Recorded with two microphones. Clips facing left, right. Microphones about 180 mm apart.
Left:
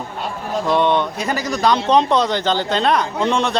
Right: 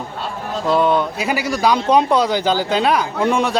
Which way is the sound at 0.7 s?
5° right (ahead or behind).